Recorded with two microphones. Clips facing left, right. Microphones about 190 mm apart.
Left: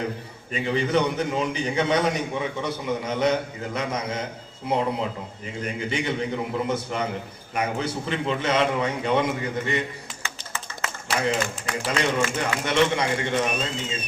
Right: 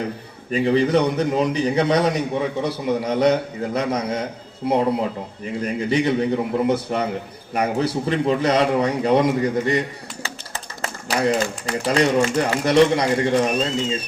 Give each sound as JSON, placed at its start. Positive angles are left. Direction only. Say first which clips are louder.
{"t": 0.5, "sound": "a man's voice", "louder": "right 6 dB", "side_deg": -35}
{"t": 5.6, "sound": "a man's voice", "louder": "right 7 dB", "side_deg": -35}